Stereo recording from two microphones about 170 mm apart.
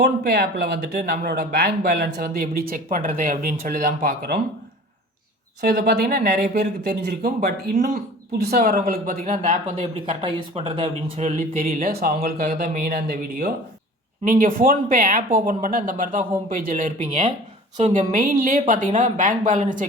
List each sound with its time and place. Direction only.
0.0 s speech: 70° right (ahead or behind)
5.6 s speech: 65° right (ahead or behind)
10.2 s speech: 30° right (ahead or behind)
11.2 s speech: 50° right (ahead or behind); by 13.5 s 70° right (ahead or behind)
14.3 s speech: 55° right (ahead or behind)